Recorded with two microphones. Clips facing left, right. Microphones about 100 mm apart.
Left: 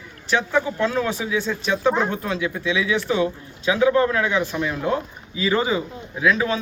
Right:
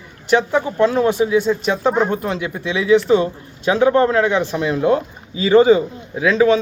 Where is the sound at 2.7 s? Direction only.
35° right (ahead or behind).